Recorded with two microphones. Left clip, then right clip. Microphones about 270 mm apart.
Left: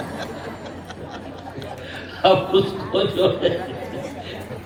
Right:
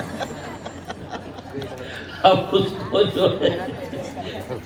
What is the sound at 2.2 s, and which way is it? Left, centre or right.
A man's voice, centre.